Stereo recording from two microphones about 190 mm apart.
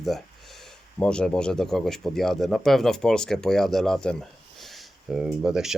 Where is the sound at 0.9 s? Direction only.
5° left (ahead or behind).